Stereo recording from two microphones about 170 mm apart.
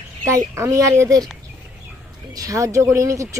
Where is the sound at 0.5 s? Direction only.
20° right (ahead or behind).